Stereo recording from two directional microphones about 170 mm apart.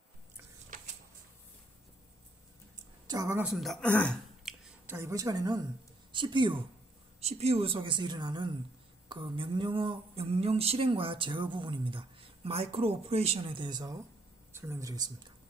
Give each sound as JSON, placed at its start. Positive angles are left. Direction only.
{"t": 2.7, "sound": "a sound", "side_deg": -20}
{"t": 3.4, "sound": "speech", "side_deg": 0}
{"t": 4.8, "sound": "a woman's voice", "side_deg": -15}
{"t": 7.2, "sound": "a woman's voice", "side_deg": -40}
{"t": 9.1, "sound": "a sound", "side_deg": -30}
{"t": 14.5, "sound": "speech", "side_deg": -15}